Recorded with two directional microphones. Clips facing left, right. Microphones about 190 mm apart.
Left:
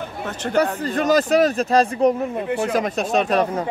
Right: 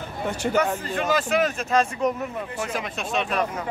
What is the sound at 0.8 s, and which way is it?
Speech, 40° left (ahead or behind).